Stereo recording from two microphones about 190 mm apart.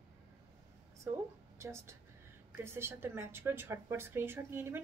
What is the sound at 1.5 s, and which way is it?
A woman's voice, 15° right (ahead or behind).